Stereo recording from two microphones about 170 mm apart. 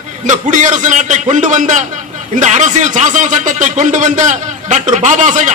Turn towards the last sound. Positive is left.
turn(degrees=-45)  # may be behind; listen again after turning